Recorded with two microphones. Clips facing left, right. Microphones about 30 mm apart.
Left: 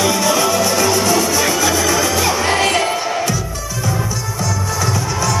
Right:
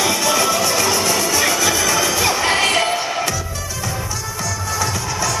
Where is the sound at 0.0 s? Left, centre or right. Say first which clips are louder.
Left 2 dB; centre.